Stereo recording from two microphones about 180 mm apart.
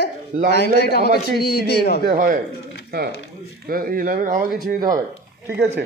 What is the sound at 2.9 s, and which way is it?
Speech, 65° right (ahead or behind).